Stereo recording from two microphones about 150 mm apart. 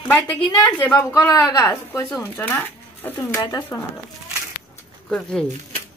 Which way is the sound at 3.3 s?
25° left (ahead or behind).